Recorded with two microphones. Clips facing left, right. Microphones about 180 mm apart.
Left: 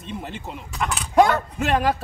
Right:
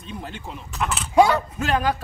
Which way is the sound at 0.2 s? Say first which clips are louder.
Left 1 dB; centre (ahead or behind).